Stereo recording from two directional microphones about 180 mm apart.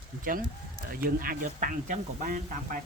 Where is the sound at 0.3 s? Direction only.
50° right (ahead or behind).